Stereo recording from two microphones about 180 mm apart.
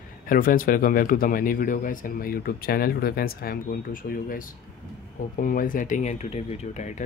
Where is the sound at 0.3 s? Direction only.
50° left (ahead or behind).